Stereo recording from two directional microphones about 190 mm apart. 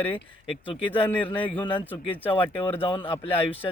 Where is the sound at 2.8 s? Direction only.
25° left (ahead or behind).